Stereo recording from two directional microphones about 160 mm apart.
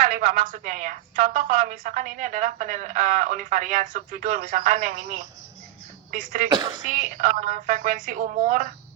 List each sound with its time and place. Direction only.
0.0 s a woman's voice: 55° right (ahead or behind)